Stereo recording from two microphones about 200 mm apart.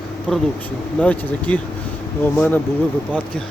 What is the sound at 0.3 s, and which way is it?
Speech, 5° left (ahead or behind).